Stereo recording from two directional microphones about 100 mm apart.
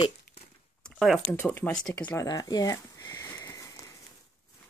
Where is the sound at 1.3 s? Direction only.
15° left (ahead or behind).